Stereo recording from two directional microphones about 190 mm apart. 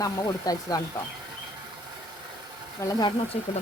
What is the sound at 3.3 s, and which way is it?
Speech, 35° left (ahead or behind).